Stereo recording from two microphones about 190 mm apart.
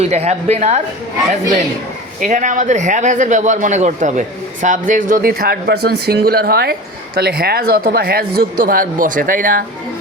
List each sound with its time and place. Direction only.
0.0 s a woman's voice: 35° right (ahead or behind)
2.2 s a man's voice: 40° right (ahead or behind)